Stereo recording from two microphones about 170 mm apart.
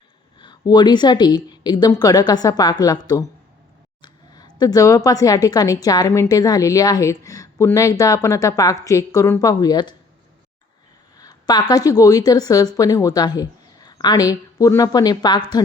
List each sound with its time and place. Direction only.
0.3 s speech: 25° left (ahead or behind)
11.2 s a sound: 20° left (ahead or behind)
11.7 s speech: 20° left (ahead or behind)